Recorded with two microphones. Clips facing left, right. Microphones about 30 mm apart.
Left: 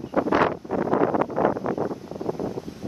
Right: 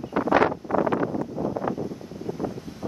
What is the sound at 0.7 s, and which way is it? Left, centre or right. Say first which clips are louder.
Vehicle: right 1 dB; right.